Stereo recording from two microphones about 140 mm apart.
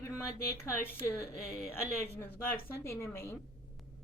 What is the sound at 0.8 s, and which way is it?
Speech, 15° left (ahead or behind).